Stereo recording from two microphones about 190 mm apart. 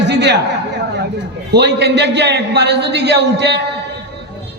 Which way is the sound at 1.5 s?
60° right (ahead or behind).